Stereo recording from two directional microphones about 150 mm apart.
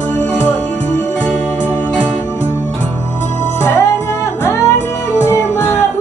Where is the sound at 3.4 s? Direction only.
15° left (ahead or behind).